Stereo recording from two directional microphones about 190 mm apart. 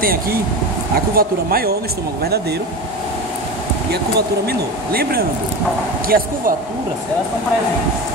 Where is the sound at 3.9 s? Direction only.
55° right (ahead or behind).